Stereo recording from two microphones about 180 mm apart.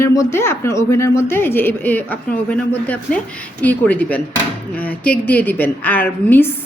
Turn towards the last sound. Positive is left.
turn(degrees=10)  # may be behind; listen again after turning